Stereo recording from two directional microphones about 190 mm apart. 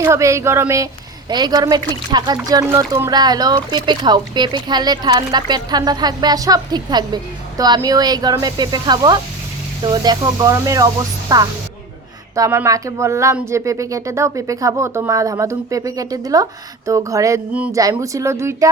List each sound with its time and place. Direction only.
0.0 s speech: 15° right (ahead or behind)